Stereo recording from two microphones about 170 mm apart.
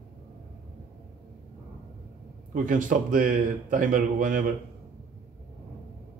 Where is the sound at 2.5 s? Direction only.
50° right (ahead or behind).